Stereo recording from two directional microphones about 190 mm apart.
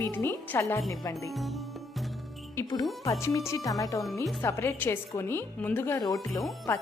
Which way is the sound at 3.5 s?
20° left (ahead or behind).